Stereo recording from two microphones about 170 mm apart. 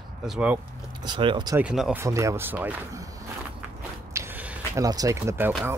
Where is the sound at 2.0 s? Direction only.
20° right (ahead or behind).